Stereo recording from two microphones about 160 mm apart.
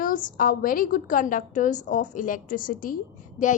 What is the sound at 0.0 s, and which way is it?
A woman's voice, 55° left (ahead or behind).